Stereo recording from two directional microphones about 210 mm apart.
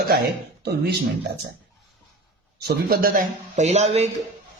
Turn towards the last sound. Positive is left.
turn(degrees=-30)  # may be behind; listen again after turning